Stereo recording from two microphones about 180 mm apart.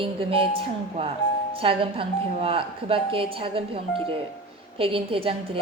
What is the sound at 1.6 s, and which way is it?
A woman's voice, 30° right (ahead or behind).